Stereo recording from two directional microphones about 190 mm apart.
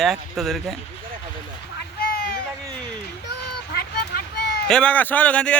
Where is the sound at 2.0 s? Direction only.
50° left (ahead or behind).